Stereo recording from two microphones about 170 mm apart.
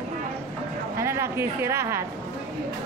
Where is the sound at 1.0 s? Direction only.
15° right (ahead or behind).